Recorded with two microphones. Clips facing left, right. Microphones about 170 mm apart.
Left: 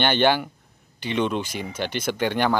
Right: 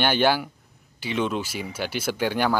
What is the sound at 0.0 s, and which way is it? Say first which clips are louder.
Speech: left 1 dB; 5° right (ahead or behind).